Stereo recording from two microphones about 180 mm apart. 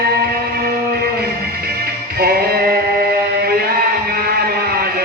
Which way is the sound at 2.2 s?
60° right (ahead or behind).